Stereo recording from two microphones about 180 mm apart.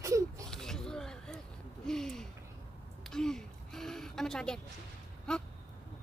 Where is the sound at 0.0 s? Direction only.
15° right (ahead or behind).